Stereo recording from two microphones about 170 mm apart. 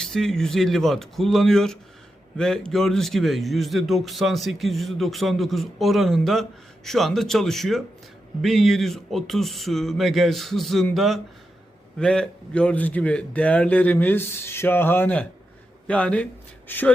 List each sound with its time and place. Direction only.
0.0 s a man's voice: 5° left (ahead or behind)